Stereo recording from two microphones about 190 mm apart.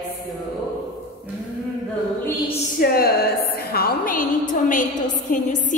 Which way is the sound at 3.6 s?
55° left (ahead or behind).